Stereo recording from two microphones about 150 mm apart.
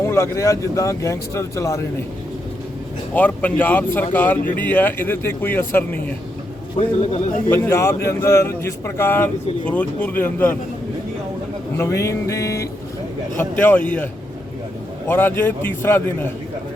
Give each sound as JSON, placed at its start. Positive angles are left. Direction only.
{"t": 0.0, "sound": "speech", "side_deg": 20}
{"t": 3.2, "sound": "speech", "side_deg": 10}
{"t": 6.7, "sound": "a man's voice", "side_deg": 45}
{"t": 7.5, "sound": "speech", "side_deg": 15}
{"t": 11.8, "sound": "speech", "side_deg": 20}